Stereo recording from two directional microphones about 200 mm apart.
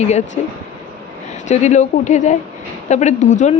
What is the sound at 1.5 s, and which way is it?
A woman's voice, 35° left (ahead or behind).